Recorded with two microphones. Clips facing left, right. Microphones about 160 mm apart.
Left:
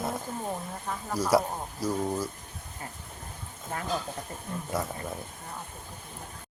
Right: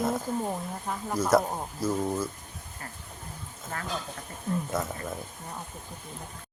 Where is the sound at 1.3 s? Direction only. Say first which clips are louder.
Right 1 dB; 10° left (ahead or behind).